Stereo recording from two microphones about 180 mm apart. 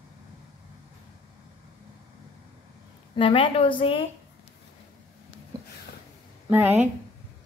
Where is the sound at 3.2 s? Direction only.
30° left (ahead or behind).